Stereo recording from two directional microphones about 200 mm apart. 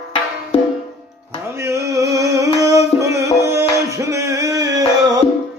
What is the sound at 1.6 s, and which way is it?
Music, 15° right (ahead or behind).